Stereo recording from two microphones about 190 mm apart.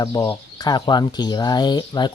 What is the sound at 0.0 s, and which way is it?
Speech, 20° left (ahead or behind).